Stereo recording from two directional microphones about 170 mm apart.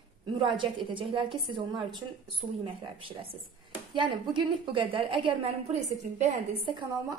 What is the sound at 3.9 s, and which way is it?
A woman's voice, 30° right (ahead or behind).